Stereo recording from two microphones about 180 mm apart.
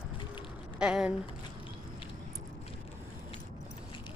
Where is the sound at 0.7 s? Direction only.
5° right (ahead or behind).